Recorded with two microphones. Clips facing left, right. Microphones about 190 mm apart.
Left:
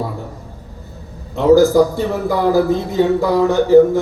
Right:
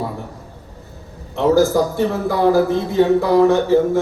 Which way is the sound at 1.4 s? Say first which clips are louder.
Left 4 dB; 15° left (ahead or behind).